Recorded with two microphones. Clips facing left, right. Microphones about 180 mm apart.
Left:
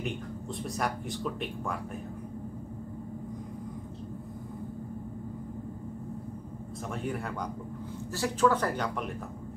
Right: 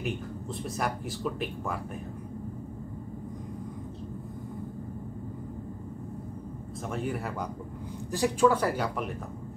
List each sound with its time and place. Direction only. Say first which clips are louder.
0.6 s speech: right 1 dB; centre (ahead or behind)
6.9 s speech: right 2 dB; centre (ahead or behind)
8.1 s speech: right 3 dB; 15° right (ahead or behind)